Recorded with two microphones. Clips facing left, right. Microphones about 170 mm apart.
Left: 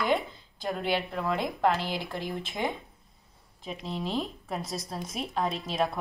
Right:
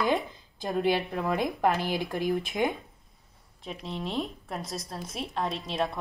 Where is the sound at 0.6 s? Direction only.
15° right (ahead or behind).